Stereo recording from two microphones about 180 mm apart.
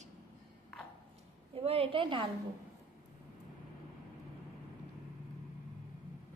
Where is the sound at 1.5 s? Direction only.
35° right (ahead or behind).